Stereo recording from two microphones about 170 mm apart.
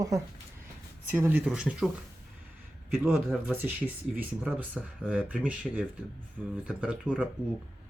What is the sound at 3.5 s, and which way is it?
Speech, 10° right (ahead or behind).